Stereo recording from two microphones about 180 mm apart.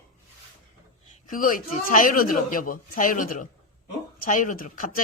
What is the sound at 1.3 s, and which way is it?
Speech, 50° left (ahead or behind).